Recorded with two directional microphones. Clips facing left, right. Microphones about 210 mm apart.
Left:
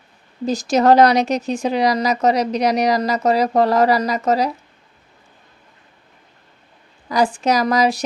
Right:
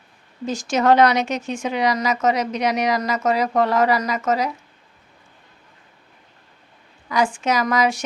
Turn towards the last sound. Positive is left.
turn(degrees=35)  # may be behind; listen again after turning